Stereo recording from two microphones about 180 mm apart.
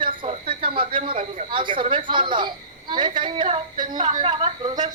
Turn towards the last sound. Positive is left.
turn(degrees=-25)  # may be behind; listen again after turning